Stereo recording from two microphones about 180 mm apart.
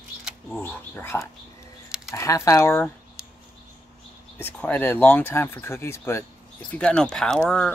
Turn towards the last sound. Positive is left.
turn(degrees=5)  # may be behind; listen again after turning